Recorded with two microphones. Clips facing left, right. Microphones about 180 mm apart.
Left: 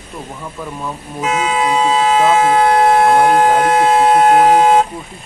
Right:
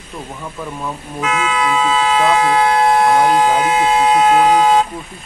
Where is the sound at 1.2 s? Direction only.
40° left (ahead or behind).